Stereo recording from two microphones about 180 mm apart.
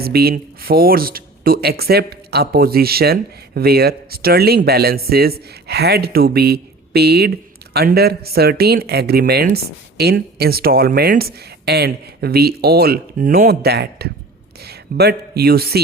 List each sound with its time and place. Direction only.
0.0 s speech: 60° right (ahead or behind)